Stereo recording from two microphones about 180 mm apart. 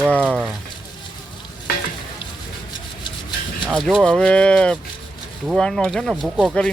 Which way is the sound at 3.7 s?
Centre (ahead or behind).